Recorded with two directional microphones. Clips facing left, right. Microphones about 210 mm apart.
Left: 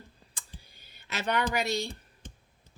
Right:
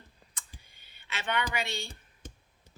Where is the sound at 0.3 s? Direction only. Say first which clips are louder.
Left 2 dB; 40° left (ahead or behind).